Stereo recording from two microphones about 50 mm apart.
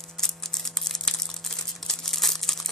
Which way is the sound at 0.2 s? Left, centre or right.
Centre.